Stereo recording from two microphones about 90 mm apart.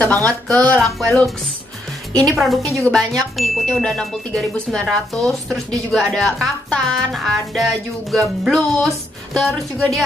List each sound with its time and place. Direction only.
0.0 s speech: 20° left (ahead or behind)
0.5 s speech: 5° left (ahead or behind)